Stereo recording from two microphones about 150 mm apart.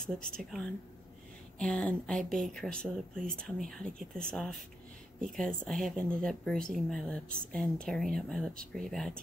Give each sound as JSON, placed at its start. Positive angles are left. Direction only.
{"t": 0.2, "sound": "speech", "side_deg": 0}